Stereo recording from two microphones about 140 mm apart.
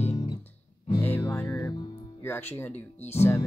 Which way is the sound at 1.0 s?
15° left (ahead or behind).